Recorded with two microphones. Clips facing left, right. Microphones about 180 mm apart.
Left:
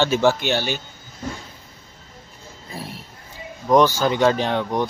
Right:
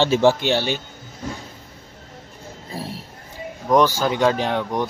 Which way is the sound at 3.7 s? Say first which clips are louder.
Left 1 dB; 10° right (ahead or behind).